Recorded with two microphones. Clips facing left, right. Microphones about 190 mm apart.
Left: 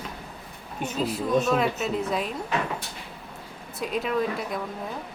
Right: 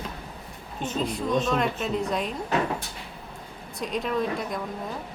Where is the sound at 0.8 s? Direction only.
5° left (ahead or behind).